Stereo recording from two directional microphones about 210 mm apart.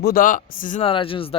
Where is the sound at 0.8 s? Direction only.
25° left (ahead or behind).